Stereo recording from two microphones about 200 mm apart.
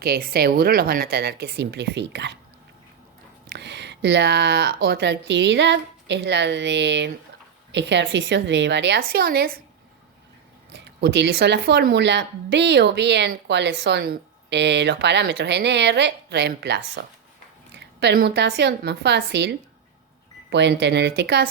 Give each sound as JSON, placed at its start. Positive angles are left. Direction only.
{"t": 0.0, "sound": "speech", "side_deg": -50}
{"t": 3.5, "sound": "speech", "side_deg": -60}
{"t": 10.7, "sound": "speech", "side_deg": -60}